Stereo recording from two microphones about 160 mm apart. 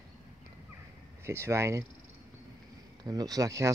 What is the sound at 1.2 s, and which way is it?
Speech, 15° right (ahead or behind).